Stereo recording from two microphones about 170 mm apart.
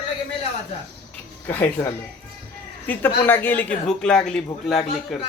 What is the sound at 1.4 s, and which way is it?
Speech, 10° left (ahead or behind).